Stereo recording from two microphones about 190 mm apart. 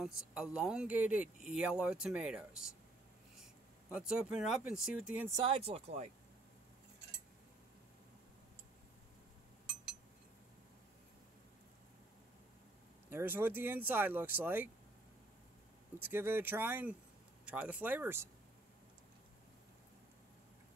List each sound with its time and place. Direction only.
0.0 s speech: 5° right (ahead or behind)
3.9 s speech: 5° right (ahead or behind)
5.6 s speech: 30° right (ahead or behind)
13.1 s speech: 10° right (ahead or behind)
16.0 s speech: 10° right (ahead or behind)